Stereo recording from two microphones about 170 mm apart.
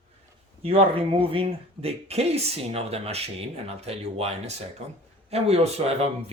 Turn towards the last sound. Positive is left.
turn(degrees=-40)  # may be behind; listen again after turning